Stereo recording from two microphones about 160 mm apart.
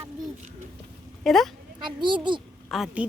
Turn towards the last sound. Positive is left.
turn(degrees=-5)  # may be behind; listen again after turning